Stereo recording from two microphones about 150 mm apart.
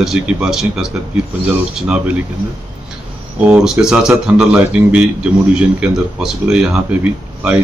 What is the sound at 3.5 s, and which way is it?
A man's voice, 5° right (ahead or behind).